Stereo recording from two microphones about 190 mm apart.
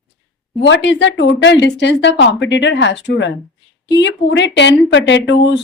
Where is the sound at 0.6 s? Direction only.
70° left (ahead or behind).